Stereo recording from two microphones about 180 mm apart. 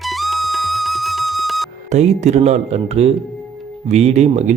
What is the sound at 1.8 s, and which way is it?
Speech, 40° right (ahead or behind).